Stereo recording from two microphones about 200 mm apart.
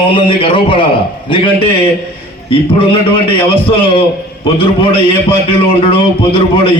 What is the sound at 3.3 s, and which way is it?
A man's voice, 25° left (ahead or behind).